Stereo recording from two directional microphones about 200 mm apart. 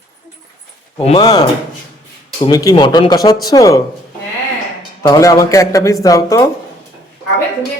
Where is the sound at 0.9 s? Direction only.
30° left (ahead or behind).